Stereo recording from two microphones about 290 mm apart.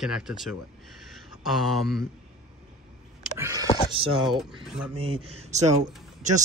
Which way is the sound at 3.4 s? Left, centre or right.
Centre.